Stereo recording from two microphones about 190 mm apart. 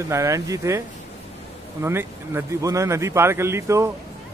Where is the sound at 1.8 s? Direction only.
10° right (ahead or behind).